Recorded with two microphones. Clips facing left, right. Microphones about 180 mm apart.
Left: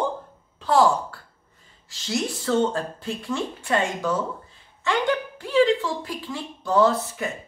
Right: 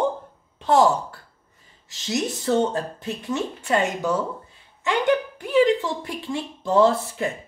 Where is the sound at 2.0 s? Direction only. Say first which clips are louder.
Right 2 dB; 20° right (ahead or behind).